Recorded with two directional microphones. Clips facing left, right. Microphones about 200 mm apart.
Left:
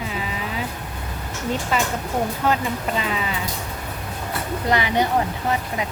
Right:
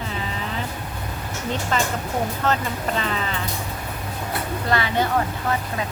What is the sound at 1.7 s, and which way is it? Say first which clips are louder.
A woman's voice: even; 10° left (ahead or behind).